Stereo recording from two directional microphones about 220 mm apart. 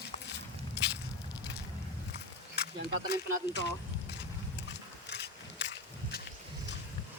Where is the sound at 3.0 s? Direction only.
50° left (ahead or behind).